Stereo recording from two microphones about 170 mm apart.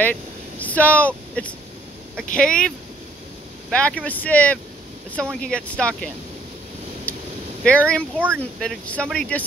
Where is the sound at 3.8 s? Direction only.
5° left (ahead or behind).